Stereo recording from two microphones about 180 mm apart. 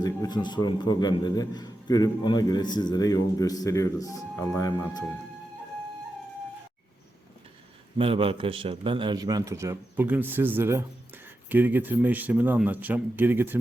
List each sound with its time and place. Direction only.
0.0 s a man's voice: 20° left (ahead or behind)
7.9 s a man's voice: 30° right (ahead or behind); by 13.6 s 10° right (ahead or behind)